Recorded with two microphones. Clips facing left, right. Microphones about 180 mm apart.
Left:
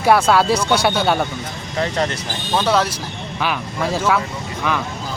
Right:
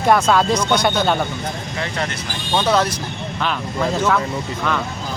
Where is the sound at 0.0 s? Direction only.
5° left (ahead or behind).